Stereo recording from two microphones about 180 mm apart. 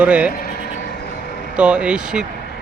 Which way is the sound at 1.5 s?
5° right (ahead or behind).